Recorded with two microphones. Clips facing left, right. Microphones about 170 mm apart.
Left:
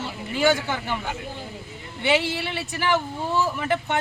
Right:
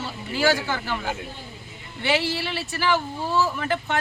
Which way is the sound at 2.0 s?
20° left (ahead or behind).